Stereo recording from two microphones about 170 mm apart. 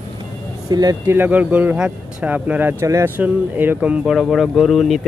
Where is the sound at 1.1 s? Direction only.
10° right (ahead or behind).